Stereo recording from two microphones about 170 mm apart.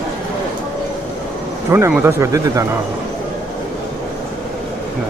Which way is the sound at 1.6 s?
15° right (ahead or behind).